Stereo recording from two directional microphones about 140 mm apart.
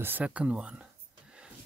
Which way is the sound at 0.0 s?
10° right (ahead or behind).